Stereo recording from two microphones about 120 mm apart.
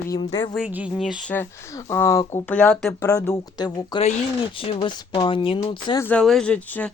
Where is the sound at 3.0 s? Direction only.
25° left (ahead or behind).